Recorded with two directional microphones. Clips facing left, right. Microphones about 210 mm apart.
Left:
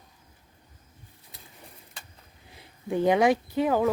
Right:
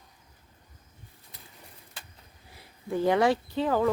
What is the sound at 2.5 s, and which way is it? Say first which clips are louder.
Speech: left 2 dB; 20° left (ahead or behind).